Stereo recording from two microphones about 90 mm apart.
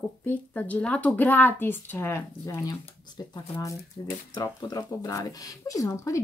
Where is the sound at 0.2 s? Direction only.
20° left (ahead or behind).